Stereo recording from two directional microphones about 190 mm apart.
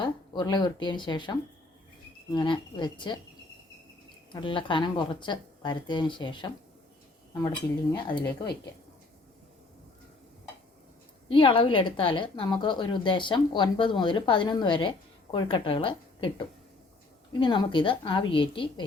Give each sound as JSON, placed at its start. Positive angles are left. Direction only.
{"t": 0.0, "sound": "a woman's voice", "side_deg": 20}
{"t": 4.3, "sound": "a woman's voice", "side_deg": 25}
{"t": 11.3, "sound": "a woman's voice", "side_deg": 25}
{"t": 17.4, "sound": "a woman's voice", "side_deg": 25}